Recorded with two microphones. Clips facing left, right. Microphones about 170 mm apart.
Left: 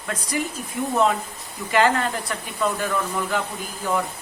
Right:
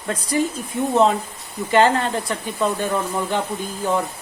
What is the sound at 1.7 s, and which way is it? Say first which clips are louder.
Speech: right 3 dB; 30° right (ahead or behind).